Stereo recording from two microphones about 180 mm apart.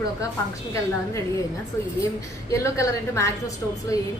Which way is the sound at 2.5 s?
15° left (ahead or behind).